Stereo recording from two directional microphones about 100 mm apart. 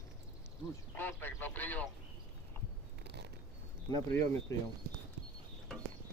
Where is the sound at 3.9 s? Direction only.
30° left (ahead or behind).